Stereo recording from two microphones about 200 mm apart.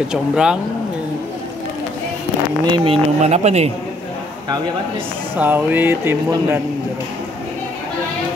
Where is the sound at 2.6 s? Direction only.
25° right (ahead or behind).